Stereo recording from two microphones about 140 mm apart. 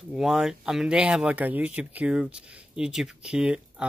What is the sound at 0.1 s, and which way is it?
Speech, 5° right (ahead or behind).